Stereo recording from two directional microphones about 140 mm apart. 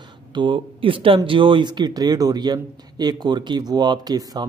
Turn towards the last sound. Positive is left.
turn(degrees=-30)  # may be behind; listen again after turning